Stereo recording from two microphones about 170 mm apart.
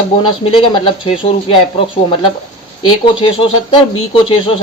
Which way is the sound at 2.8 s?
30° left (ahead or behind).